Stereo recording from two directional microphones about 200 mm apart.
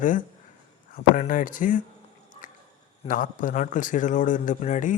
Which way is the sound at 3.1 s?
40° left (ahead or behind).